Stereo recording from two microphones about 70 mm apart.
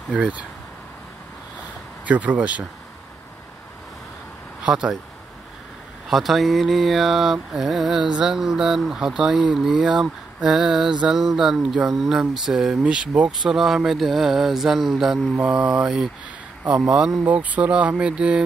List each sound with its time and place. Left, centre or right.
0.1 s speech: centre
2.0 s speech: centre
4.6 s speech: centre
6.0 s speech: centre
15.4 s speech: centre
17.3 s speech: right